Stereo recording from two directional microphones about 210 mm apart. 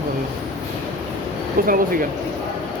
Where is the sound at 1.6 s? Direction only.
40° right (ahead or behind).